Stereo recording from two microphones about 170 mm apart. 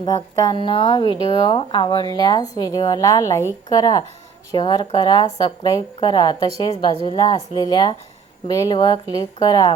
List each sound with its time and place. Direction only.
0.0 s speech: 20° left (ahead or behind)